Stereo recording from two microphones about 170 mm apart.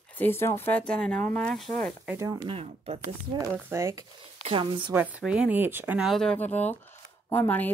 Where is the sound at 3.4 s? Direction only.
15° right (ahead or behind).